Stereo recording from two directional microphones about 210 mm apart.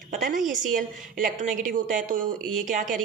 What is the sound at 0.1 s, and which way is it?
A woman's voice, 40° right (ahead or behind).